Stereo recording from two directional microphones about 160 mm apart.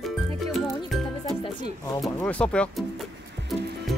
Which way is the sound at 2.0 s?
5° left (ahead or behind).